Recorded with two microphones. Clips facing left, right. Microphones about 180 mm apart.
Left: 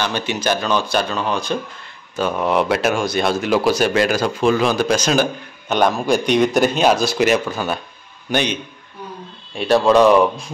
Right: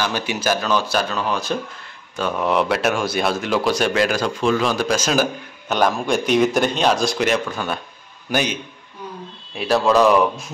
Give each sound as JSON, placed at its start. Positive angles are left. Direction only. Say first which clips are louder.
{"t": 0.0, "sound": "speech", "louder": "left 1 dB", "side_deg": -10}
{"t": 8.3, "sound": "a man's voice", "louder": "left 2 dB", "side_deg": -5}